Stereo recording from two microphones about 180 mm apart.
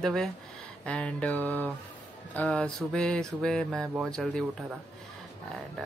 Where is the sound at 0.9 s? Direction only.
5° left (ahead or behind).